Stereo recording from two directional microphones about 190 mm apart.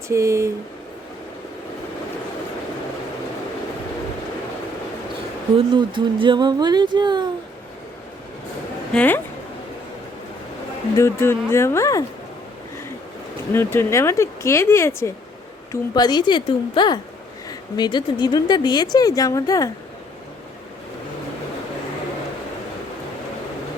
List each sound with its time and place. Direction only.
0.1 s speech: 15° right (ahead or behind)
5.5 s speech: 25° right (ahead or behind)
8.9 s speech: 10° left (ahead or behind)
10.9 s speech: 15° left (ahead or behind)
13.5 s a woman's voice: 10° left (ahead or behind)